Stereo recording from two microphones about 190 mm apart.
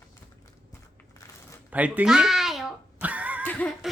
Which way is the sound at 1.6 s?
10° right (ahead or behind).